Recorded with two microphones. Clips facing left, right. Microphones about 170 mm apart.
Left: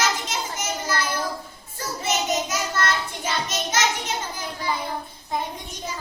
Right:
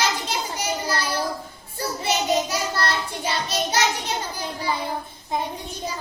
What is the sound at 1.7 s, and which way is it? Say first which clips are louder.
Child singing: right 2 dB; 35° right (ahead or behind).